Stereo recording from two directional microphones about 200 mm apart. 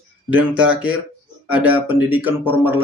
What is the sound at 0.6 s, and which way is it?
Speech, 5° right (ahead or behind).